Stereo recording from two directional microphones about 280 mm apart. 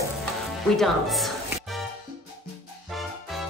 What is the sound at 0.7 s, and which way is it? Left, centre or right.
Speech, centre.